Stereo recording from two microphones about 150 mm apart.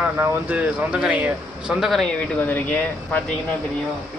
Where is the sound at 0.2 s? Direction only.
10° right (ahead or behind).